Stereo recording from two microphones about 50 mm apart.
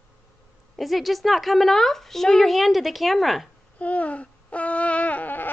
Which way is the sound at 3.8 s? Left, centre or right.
Left.